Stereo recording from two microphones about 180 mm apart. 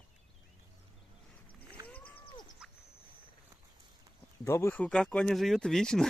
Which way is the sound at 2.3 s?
25° left (ahead or behind).